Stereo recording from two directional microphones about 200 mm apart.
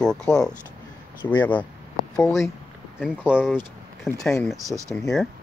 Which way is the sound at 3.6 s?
10° left (ahead or behind).